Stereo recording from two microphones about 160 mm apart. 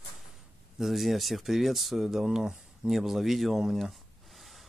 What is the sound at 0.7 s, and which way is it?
Speech, centre (ahead or behind).